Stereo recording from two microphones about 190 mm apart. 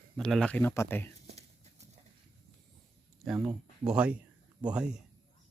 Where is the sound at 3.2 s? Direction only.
5° right (ahead or behind).